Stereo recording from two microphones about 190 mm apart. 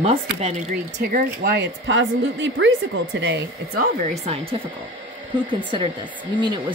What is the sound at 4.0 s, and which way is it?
Speech, 35° right (ahead or behind).